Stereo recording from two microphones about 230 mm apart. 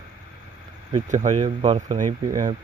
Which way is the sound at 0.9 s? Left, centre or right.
Right.